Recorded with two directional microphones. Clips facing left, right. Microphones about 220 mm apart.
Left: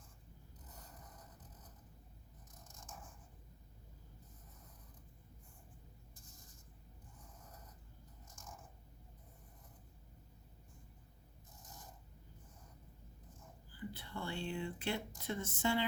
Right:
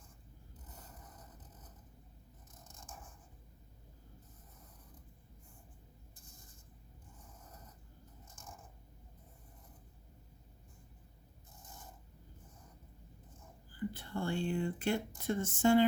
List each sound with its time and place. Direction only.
13.7 s speech: 45° right (ahead or behind)